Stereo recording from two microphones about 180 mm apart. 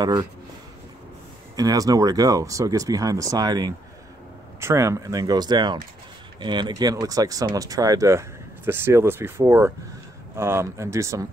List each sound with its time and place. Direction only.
0.0 s speech: 20° right (ahead or behind)
1.6 s speech: 20° right (ahead or behind)